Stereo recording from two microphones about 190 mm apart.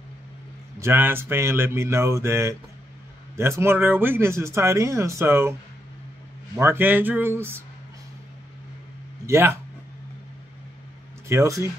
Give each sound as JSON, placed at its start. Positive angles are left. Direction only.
{"t": 0.7, "sound": "speech", "side_deg": -15}
{"t": 9.2, "sound": "a man's voice", "side_deg": -15}
{"t": 11.2, "sound": "speech", "side_deg": -15}